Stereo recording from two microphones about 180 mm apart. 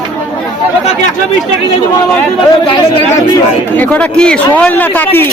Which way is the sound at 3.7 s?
10° left (ahead or behind).